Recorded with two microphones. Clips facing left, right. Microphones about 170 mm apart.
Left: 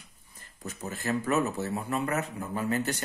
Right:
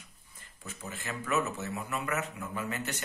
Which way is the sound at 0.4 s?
40° left (ahead or behind).